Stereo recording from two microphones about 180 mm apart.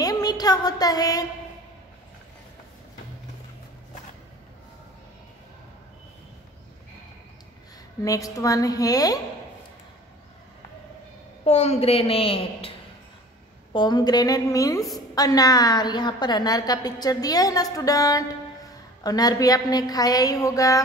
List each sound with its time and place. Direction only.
0.0 s a woman's voice: 20° left (ahead or behind)
8.0 s a woman's voice: 20° left (ahead or behind)
11.4 s a woman's voice: 35° left (ahead or behind)
13.7 s a woman's voice: 25° left (ahead or behind)